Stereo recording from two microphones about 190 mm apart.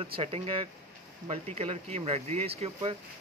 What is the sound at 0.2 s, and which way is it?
Speech, 30° right (ahead or behind).